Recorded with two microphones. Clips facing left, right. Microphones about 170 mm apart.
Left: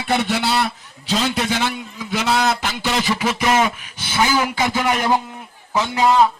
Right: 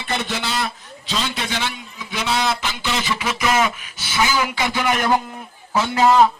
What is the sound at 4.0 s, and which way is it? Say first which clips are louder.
Speech: left 2 dB; 50° left (ahead or behind).